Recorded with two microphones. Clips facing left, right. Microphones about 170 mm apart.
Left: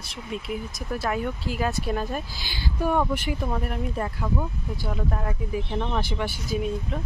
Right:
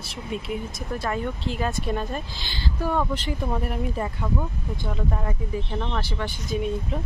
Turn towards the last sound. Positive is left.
turn(degrees=0)  # may be behind; listen again after turning